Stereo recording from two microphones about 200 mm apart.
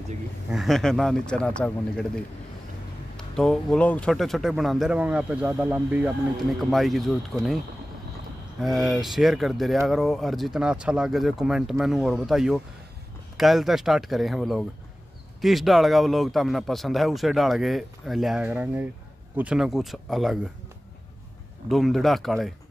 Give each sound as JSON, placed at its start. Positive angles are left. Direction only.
{"t": 0.5, "sound": "speech", "side_deg": 0}
{"t": 3.2, "sound": "speech", "side_deg": 5}
{"t": 21.6, "sound": "speech", "side_deg": 0}